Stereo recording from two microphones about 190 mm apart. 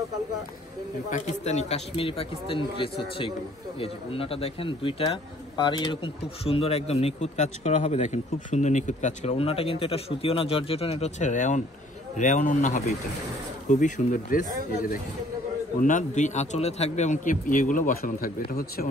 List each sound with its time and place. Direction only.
1.1 s a man's voice: 40° left (ahead or behind)
15.8 s a man's voice: 40° left (ahead or behind)